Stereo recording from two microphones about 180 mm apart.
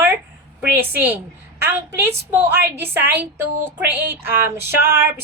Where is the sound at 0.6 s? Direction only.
10° right (ahead or behind).